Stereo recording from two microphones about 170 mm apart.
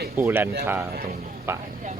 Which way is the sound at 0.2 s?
15° right (ahead or behind).